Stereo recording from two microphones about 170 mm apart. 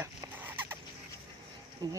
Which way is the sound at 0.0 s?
10° right (ahead or behind).